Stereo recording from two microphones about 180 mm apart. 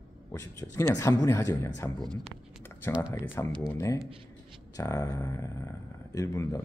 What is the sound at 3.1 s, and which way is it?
Speech, 10° left (ahead or behind).